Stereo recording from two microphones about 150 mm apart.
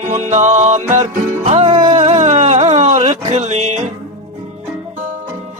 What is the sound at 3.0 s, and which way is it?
Music, 45° right (ahead or behind).